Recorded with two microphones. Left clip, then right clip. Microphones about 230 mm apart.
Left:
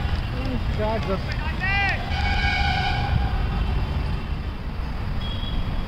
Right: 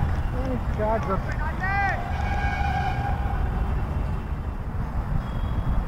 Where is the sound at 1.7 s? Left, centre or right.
Left.